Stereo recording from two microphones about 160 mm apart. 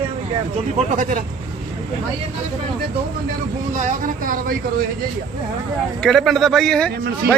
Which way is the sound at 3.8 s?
55° right (ahead or behind).